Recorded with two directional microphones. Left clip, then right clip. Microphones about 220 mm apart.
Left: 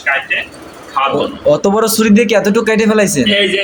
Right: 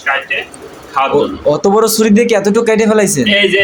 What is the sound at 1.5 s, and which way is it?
A man's voice, 10° right (ahead or behind).